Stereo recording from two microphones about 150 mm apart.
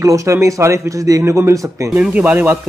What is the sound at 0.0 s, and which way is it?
Speech, 20° right (ahead or behind).